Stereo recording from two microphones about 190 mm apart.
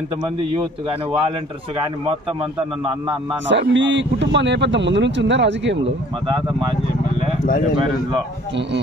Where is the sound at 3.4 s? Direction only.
75° right (ahead or behind).